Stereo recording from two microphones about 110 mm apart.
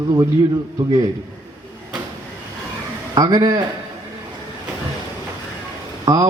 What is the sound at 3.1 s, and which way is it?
Speech, 35° right (ahead or behind).